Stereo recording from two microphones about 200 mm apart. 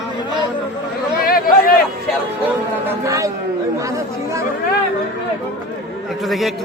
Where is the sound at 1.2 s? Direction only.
45° left (ahead or behind).